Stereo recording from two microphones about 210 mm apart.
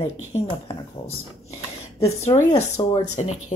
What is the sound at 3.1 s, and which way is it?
Speech, 35° left (ahead or behind).